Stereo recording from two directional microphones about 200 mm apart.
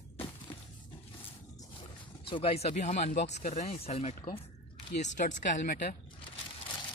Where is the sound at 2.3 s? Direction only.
30° left (ahead or behind).